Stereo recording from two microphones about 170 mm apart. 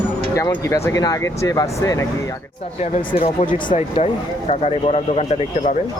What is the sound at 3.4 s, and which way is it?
Speech, 45° left (ahead or behind).